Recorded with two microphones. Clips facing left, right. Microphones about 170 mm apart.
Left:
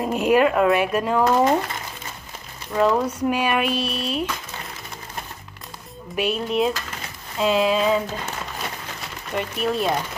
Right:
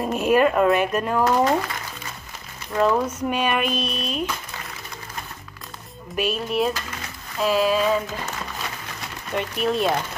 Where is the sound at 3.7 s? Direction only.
15° right (ahead or behind).